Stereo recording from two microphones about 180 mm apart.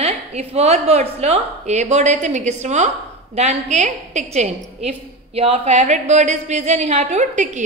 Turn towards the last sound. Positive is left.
turn(degrees=-40)  # may be behind; listen again after turning